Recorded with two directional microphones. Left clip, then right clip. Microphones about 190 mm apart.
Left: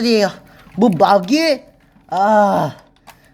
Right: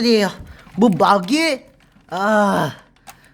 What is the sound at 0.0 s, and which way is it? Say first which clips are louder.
Speech: left 1 dB; 5° left (ahead or behind).